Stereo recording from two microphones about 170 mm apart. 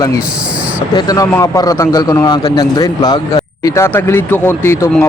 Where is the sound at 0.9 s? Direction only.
20° left (ahead or behind).